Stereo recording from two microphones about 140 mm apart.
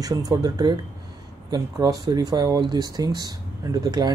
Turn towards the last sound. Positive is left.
turn(degrees=-25)  # may be behind; listen again after turning